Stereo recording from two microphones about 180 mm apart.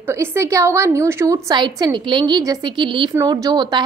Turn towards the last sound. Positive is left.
turn(degrees=-25)  # may be behind; listen again after turning